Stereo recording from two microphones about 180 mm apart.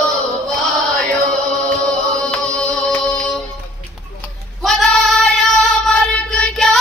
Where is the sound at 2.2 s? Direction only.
5° left (ahead or behind).